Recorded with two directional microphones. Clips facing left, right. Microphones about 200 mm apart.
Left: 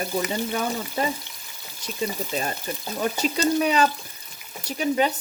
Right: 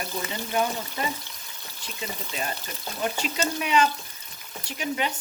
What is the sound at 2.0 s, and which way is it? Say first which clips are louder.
Frying: left 6 dB; 40° left (ahead or behind).